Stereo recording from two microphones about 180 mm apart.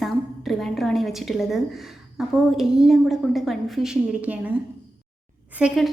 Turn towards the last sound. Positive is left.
turn(degrees=-5)  # may be behind; listen again after turning